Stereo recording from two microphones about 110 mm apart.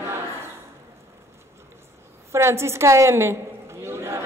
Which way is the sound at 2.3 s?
25° right (ahead or behind).